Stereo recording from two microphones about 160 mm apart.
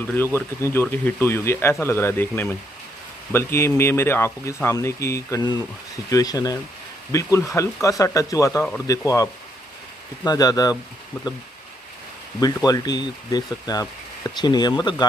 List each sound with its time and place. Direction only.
0.0 s speech: 15° left (ahead or behind)
12.4 s speech: 25° left (ahead or behind)